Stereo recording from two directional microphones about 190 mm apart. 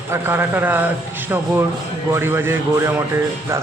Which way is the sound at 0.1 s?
10° right (ahead or behind).